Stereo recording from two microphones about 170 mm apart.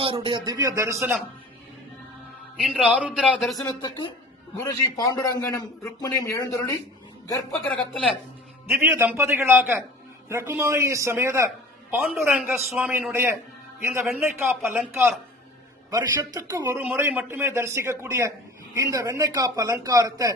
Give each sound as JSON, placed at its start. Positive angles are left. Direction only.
{"t": 0.0, "sound": "a man's voice", "side_deg": -30}
{"t": 2.6, "sound": "a man's voice", "side_deg": -5}
{"t": 3.6, "sound": "a man's voice", "side_deg": 25}
{"t": 7.5, "sound": "a man's voice", "side_deg": 5}
{"t": 8.7, "sound": "a man's voice", "side_deg": -15}
{"t": 12.5, "sound": "a man's voice", "side_deg": 0}